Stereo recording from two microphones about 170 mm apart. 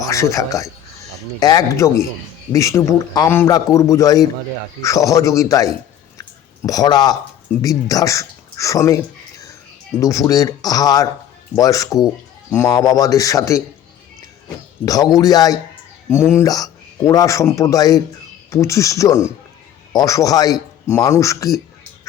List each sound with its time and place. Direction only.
0.1 s a man's voice: 20° left (ahead or behind)
6.1 s a sound: 20° left (ahead or behind)
7.5 s a man's voice: 20° left (ahead or behind)
10.0 s a man's voice: 20° left (ahead or behind)
14.8 s a man's voice: 20° left (ahead or behind)